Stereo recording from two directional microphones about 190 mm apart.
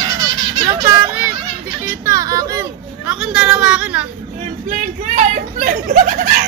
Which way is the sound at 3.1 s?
5° right (ahead or behind).